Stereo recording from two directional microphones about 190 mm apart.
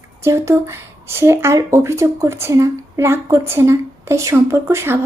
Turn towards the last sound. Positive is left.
turn(degrees=-15)  # may be behind; listen again after turning